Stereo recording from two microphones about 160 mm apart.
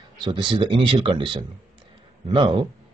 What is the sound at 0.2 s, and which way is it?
Speech, 30° right (ahead or behind).